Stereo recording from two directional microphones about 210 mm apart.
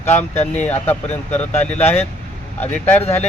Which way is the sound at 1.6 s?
10° left (ahead or behind).